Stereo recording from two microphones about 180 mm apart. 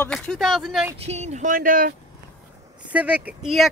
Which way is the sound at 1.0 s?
35° right (ahead or behind).